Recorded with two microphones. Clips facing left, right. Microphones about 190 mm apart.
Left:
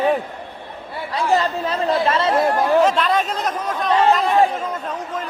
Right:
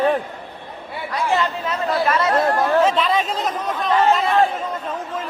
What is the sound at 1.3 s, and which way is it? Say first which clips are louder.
Speech: left 3 dB; 35° left (ahead or behind).